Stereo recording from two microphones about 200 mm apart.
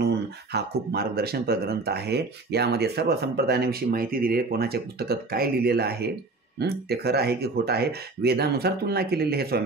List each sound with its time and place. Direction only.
0.0 s speech: 55° right (ahead or behind)